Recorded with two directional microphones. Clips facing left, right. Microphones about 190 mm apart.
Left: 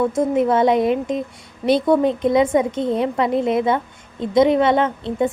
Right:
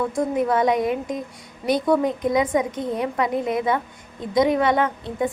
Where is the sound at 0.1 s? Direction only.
25° left (ahead or behind).